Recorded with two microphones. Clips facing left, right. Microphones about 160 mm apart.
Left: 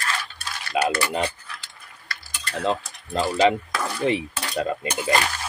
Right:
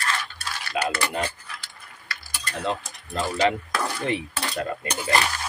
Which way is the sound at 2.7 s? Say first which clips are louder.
Left 4 dB; 25° left (ahead or behind).